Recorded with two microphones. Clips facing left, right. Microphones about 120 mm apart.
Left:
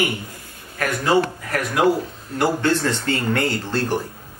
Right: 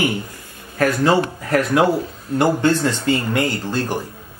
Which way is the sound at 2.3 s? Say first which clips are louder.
Right 3 dB; 20° right (ahead or behind).